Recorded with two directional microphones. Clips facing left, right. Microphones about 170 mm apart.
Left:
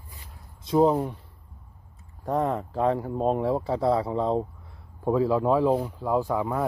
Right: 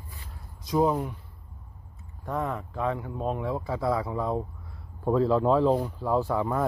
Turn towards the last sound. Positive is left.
turn(degrees=10)  # may be behind; listen again after turning